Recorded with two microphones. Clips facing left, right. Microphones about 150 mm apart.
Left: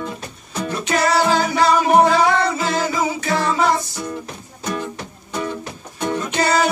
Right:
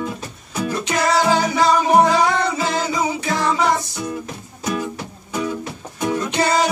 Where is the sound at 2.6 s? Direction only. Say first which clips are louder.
Left 1 dB; 20° right (ahead or behind).